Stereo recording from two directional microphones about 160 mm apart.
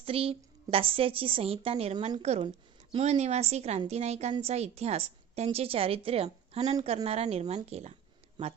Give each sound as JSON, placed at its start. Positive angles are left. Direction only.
{"t": 0.0, "sound": "a woman's voice", "side_deg": -35}